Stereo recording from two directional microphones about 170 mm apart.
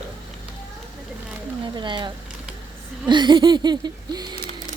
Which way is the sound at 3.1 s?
25° right (ahead or behind).